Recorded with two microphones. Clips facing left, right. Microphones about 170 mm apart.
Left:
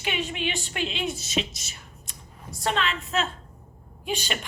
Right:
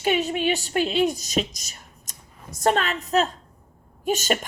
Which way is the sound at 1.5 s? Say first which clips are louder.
Left 1 dB; 40° right (ahead or behind).